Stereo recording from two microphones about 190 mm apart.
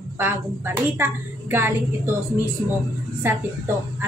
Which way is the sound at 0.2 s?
10° right (ahead or behind).